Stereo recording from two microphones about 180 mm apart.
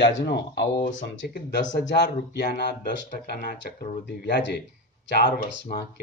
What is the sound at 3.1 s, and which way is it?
Speech, 55° left (ahead or behind).